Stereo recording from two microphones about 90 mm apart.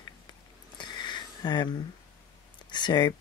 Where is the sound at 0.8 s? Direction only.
55° left (ahead or behind).